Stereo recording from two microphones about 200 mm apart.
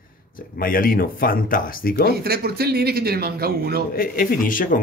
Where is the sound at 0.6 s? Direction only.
45° left (ahead or behind).